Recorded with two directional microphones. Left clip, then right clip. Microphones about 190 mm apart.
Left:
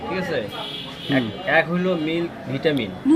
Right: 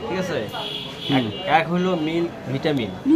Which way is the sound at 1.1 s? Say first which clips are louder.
Even; 15° right (ahead or behind).